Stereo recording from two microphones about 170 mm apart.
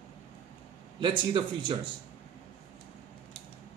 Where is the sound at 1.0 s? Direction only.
30° right (ahead or behind).